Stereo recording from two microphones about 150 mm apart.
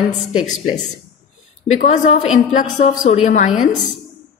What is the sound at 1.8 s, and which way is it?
Speech, 55° left (ahead or behind).